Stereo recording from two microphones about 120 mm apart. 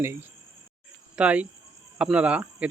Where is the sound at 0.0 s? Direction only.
20° right (ahead or behind).